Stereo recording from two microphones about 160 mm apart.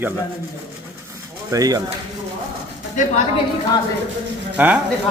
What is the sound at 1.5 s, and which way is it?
Speech, 20° right (ahead or behind).